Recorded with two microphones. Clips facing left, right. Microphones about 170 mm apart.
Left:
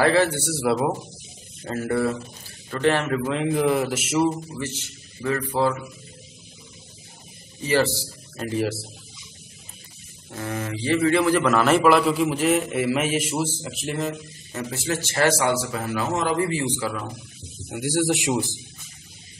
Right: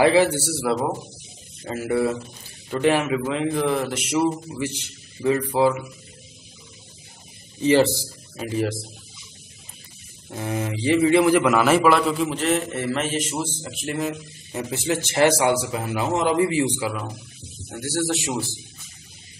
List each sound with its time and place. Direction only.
0.0 s a man's voice: 15° right (ahead or behind)
0.5 s a man's voice: centre (ahead or behind)
1.6 s a man's voice: 5° right (ahead or behind)
4.6 s a man's voice: 15° right (ahead or behind)
7.6 s a man's voice: 20° right (ahead or behind)
8.4 s a man's voice: centre (ahead or behind)
10.3 s a man's voice: 15° right (ahead or behind)
14.5 s a man's voice: 15° right (ahead or behind)
17.6 s a man's voice: 10° left (ahead or behind)